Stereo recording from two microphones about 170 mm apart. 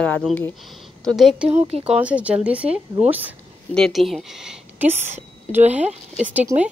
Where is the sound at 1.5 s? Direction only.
40° right (ahead or behind).